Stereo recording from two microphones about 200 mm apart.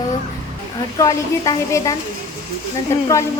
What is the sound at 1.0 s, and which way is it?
Female singing, 20° left (ahead or behind).